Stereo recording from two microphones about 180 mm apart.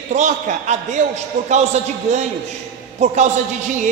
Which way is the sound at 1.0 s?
40° right (ahead or behind).